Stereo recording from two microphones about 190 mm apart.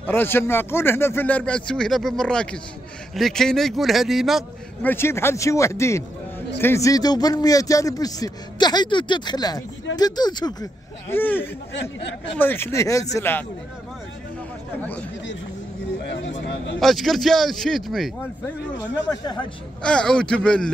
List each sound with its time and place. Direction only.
0.0 s speech: 10° left (ahead or behind)
4.8 s a man's voice: 15° left (ahead or behind)
14.8 s speech: 10° left (ahead or behind)
16.1 s a sound: 70° left (ahead or behind)
16.8 s speech: centre (ahead or behind)
18.8 s speech: 75° left (ahead or behind)
19.0 s a man's voice: 20° left (ahead or behind)
19.8 s speech: 5° left (ahead or behind)